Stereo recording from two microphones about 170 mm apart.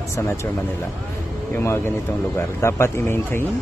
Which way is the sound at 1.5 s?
15° left (ahead or behind).